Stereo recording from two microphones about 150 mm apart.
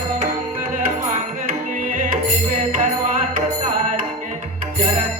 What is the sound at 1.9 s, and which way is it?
Music, 60° right (ahead or behind).